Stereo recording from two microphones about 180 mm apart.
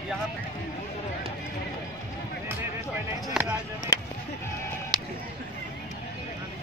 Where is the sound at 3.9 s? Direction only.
20° left (ahead or behind).